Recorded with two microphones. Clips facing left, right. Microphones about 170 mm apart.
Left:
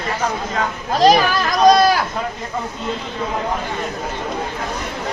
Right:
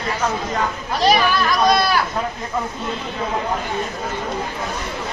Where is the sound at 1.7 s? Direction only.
45° left (ahead or behind).